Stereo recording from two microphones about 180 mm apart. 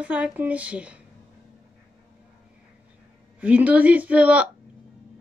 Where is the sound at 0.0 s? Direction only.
10° right (ahead or behind).